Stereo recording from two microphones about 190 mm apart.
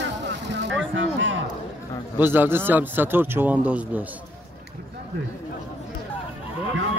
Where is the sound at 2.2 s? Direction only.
10° right (ahead or behind).